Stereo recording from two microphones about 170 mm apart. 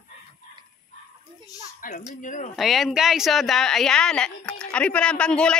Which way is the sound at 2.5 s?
Centre (ahead or behind).